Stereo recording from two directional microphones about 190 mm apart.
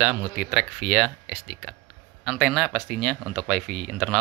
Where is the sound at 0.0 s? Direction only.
5° right (ahead or behind).